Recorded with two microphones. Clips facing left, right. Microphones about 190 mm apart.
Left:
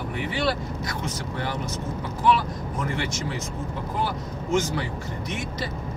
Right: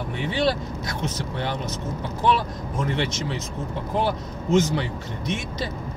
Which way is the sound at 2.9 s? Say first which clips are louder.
Right 2 dB; 25° right (ahead or behind).